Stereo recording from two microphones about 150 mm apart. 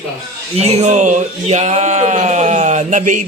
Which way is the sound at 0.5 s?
45° right (ahead or behind).